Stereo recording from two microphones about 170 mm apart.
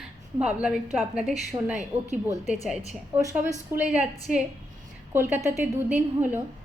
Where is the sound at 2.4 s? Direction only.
Centre (ahead or behind).